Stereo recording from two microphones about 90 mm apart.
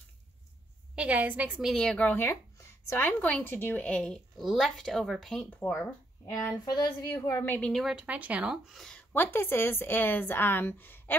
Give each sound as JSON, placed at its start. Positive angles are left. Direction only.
{"t": 0.9, "sound": "speech", "side_deg": -15}
{"t": 1.8, "sound": "a woman's voice", "side_deg": 10}
{"t": 5.5, "sound": "speech", "side_deg": 20}
{"t": 6.2, "sound": "a woman's voice", "side_deg": 35}
{"t": 7.8, "sound": "speech", "side_deg": -15}
{"t": 8.7, "sound": "a woman's voice", "side_deg": 5}
{"t": 9.1, "sound": "speech", "side_deg": 25}